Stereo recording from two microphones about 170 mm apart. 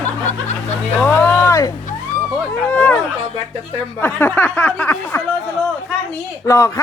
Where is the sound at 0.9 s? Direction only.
15° left (ahead or behind).